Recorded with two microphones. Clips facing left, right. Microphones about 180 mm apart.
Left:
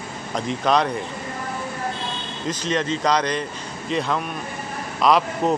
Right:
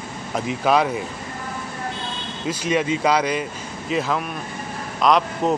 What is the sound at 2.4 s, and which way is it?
Speech, 10° right (ahead or behind).